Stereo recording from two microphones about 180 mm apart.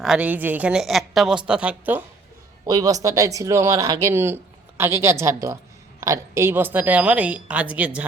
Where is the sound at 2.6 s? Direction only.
20° right (ahead or behind).